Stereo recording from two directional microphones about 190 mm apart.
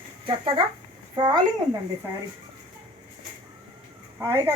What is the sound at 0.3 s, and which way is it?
Speech, 30° right (ahead or behind).